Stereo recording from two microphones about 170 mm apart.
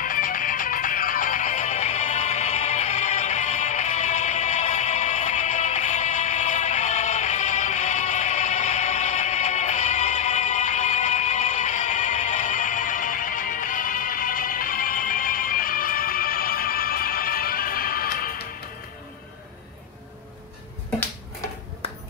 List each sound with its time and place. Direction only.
0.0 s music: 55° left (ahead or behind)